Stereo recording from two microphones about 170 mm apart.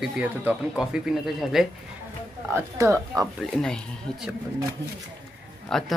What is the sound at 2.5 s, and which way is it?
Speech, 15° right (ahead or behind).